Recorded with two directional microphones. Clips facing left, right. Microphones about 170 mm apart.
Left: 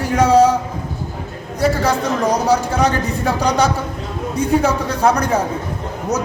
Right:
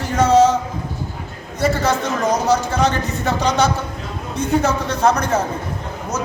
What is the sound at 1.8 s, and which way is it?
Speech, 15° left (ahead or behind).